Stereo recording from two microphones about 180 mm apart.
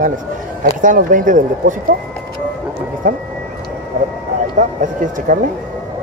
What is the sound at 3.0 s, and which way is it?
Speech, 50° right (ahead or behind).